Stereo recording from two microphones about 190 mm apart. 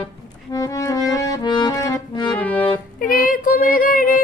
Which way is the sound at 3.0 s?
45° left (ahead or behind).